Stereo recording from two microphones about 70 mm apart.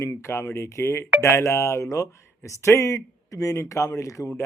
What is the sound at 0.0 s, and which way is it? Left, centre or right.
Speech, left.